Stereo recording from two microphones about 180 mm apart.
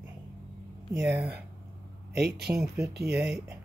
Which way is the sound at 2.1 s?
65° right (ahead or behind).